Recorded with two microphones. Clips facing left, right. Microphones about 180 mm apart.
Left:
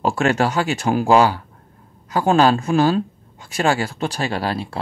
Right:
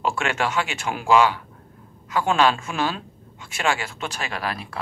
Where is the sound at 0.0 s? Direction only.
40° left (ahead or behind).